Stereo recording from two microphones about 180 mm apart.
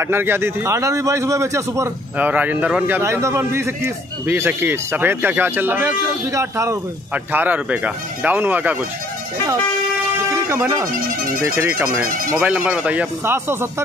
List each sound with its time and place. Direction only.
0.0 s a man's voice: 15° right (ahead or behind)
10.5 s a man's voice: 15° right (ahead or behind)
10.9 s speech: 50° right (ahead or behind)
12.4 s a man's voice: 5° right (ahead or behind)